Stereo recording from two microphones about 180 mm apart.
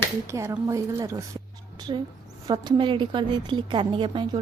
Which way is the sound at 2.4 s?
25° right (ahead or behind).